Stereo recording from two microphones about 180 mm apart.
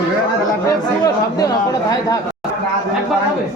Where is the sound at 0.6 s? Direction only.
20° left (ahead or behind).